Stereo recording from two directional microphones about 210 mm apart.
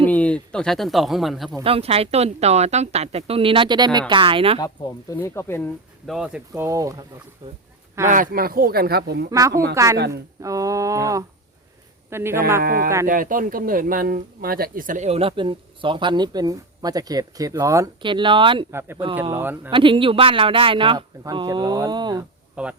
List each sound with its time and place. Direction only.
0.0 s speech: 5° left (ahead or behind)
1.6 s speech: 25° right (ahead or behind)
4.6 s speech: 15° left (ahead or behind)
6.1 s speech: 5° right (ahead or behind)
6.5 s speech: 15° right (ahead or behind)
8.0 s speech: 40° right (ahead or behind)
9.3 s speech: 15° right (ahead or behind)
12.6 s speech: 45° right (ahead or behind); by 18.6 s 25° right (ahead or behind)
18.7 s speech: 10° right (ahead or behind)
19.7 s speech: 25° right (ahead or behind)
22.6 s speech: 5° right (ahead or behind)